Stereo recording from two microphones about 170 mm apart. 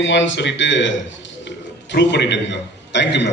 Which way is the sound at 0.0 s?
90° left.